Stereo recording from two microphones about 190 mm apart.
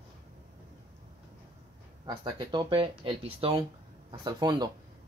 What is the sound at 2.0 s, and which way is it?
Speech, 25° right (ahead or behind).